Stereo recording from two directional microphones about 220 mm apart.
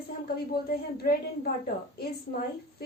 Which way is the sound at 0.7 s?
45° left (ahead or behind).